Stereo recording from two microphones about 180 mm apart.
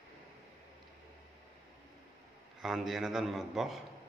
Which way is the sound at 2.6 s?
Centre (ahead or behind).